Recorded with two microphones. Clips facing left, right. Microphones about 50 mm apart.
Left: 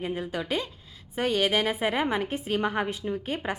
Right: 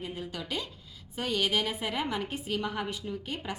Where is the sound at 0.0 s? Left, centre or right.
Left.